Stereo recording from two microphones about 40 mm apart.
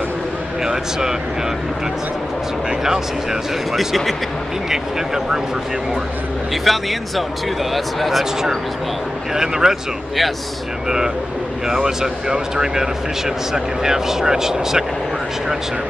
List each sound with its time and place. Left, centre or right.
0.7 s speech: centre
3.7 s speech: centre
4.6 s speech: centre
6.5 s speech: centre
9.3 s speech: centre
11.6 s speech: centre